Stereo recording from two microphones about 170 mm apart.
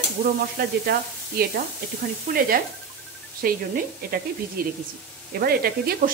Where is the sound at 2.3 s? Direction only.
55° right (ahead or behind).